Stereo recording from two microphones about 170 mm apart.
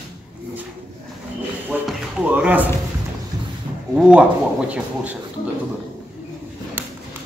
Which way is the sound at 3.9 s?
5° right (ahead or behind).